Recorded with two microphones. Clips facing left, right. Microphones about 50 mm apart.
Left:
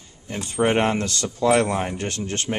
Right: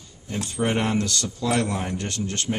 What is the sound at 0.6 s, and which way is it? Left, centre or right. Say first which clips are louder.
Speech: left 4 dB; left.